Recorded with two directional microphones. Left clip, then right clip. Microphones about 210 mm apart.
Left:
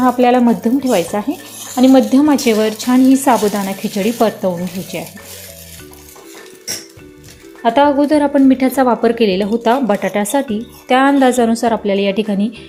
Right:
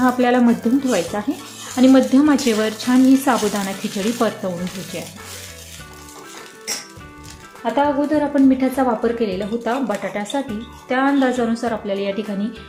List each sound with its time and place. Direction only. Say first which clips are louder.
0.0 s speech: left 5 dB; 15° left (ahead or behind)
7.6 s a woman's voice: left 7 dB; 45° left (ahead or behind)